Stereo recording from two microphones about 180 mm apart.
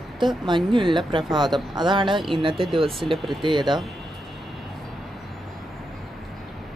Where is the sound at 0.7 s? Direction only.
25° right (ahead or behind).